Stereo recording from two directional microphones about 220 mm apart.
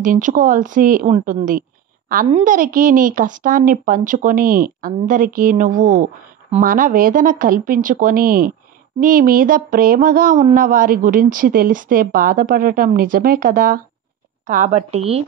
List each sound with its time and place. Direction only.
0.0 s speech: 35° right (ahead or behind)